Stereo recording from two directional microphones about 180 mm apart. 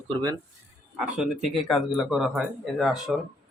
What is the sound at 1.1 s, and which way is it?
A man's voice, 5° right (ahead or behind).